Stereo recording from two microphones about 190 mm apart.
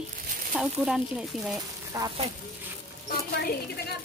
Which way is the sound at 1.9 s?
15° right (ahead or behind).